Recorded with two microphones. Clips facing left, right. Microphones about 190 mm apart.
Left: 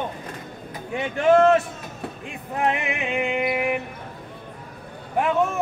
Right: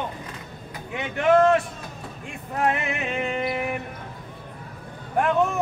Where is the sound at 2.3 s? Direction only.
15° left (ahead or behind).